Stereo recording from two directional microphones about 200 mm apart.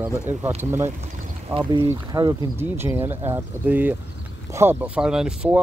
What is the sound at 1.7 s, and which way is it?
Speech, 20° right (ahead or behind).